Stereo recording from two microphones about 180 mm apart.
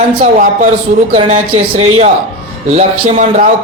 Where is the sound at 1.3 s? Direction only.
35° right (ahead or behind).